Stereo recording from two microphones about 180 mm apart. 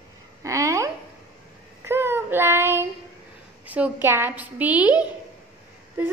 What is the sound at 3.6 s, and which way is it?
A woman's voice, 10° right (ahead or behind).